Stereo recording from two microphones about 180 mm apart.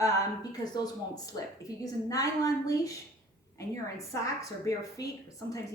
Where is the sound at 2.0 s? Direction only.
20° left (ahead or behind).